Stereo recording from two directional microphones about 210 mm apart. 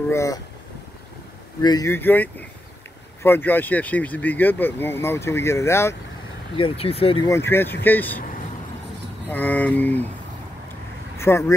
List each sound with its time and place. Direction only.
0.1 s speech: 15° left (ahead or behind)
1.6 s speech: 20° left (ahead or behind)
6.5 s speech: 25° left (ahead or behind)
7.2 s speech: 10° left (ahead or behind)
9.3 s speech: 10° left (ahead or behind)
11.1 s speech: 15° left (ahead or behind)